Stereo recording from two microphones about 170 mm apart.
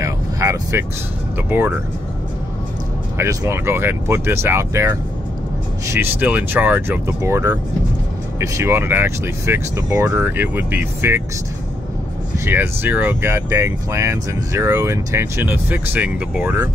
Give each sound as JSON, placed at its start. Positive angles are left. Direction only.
{"t": 0.0, "sound": "vehicle", "side_deg": -20}
{"t": 1.5, "sound": "speech", "side_deg": -10}
{"t": 3.2, "sound": "speech", "side_deg": -15}
{"t": 12.4, "sound": "speech", "side_deg": -10}